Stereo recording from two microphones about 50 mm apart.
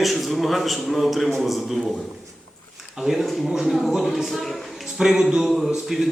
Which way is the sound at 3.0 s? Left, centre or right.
Centre.